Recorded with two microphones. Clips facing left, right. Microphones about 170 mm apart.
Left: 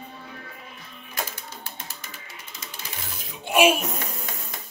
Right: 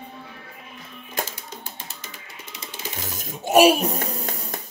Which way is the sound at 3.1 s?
45° right (ahead or behind).